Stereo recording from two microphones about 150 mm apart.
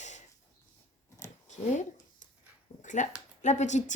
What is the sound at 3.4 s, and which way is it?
Speech, 50° left (ahead or behind).